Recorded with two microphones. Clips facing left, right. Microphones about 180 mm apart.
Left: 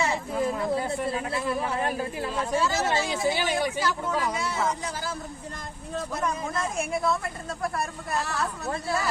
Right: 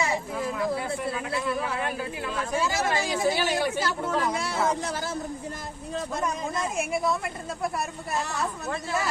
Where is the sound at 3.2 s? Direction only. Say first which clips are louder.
Right 1 dB; 15° left (ahead or behind).